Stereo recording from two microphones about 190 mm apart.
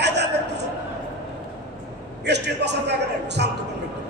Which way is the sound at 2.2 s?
65° right (ahead or behind).